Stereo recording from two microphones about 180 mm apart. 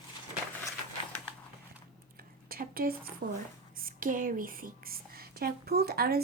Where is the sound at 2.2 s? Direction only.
55° right (ahead or behind).